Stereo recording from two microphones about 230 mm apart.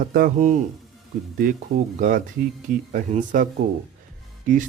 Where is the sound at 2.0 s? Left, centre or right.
Right.